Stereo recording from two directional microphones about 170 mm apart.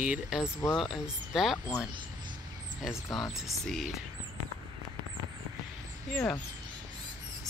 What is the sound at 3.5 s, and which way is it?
Speech, centre (ahead or behind).